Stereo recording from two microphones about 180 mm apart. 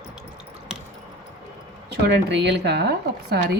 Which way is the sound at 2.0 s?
70° right (ahead or behind).